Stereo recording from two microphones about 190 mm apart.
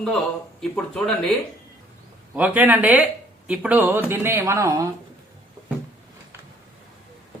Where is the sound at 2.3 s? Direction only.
10° right (ahead or behind).